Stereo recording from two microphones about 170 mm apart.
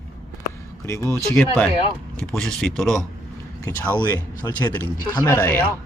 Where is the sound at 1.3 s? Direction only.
Centre (ahead or behind).